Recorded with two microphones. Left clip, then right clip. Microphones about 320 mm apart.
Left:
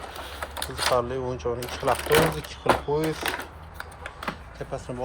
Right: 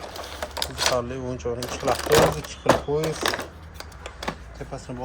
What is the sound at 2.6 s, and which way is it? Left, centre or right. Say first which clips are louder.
Speech: right 2 dB; centre.